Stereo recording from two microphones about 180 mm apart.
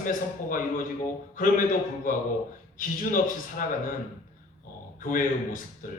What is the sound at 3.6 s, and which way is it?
Speech, 50° left (ahead or behind).